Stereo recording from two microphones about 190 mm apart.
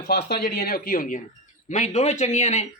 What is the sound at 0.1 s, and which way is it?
Speech, 55° left (ahead or behind).